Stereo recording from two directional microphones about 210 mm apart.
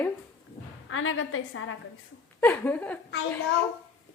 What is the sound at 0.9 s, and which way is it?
Speech, 75° left (ahead or behind).